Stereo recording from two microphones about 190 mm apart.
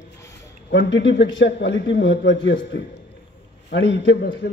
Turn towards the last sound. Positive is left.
turn(degrees=65)  # may be behind; listen again after turning